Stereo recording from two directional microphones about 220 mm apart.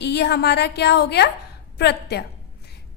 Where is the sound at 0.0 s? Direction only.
50° left (ahead or behind).